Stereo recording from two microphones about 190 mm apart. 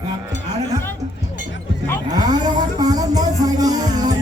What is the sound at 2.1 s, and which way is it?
Music, 20° right (ahead or behind).